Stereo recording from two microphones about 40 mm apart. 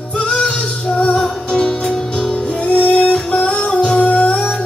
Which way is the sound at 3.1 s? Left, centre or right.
Left.